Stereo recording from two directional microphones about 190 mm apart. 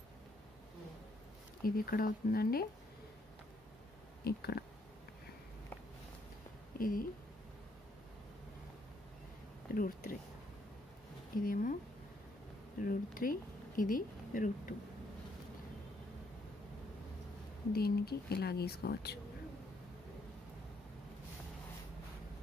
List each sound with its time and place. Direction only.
1.6 s speech: 50° left (ahead or behind)
4.2 s a woman's voice: 55° left (ahead or behind)
6.8 s speech: 50° left (ahead or behind)
9.8 s speech: 50° left (ahead or behind)
11.4 s speech: 45° left (ahead or behind)
17.7 s a woman's voice: 55° left (ahead or behind)